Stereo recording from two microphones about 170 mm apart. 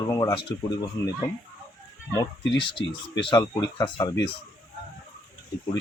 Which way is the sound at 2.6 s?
30° left (ahead or behind).